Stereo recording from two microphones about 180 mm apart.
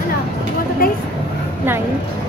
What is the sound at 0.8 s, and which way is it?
Speech, 55° left (ahead or behind).